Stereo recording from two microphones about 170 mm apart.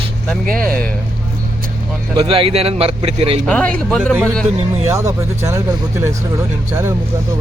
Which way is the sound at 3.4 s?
10° left (ahead or behind).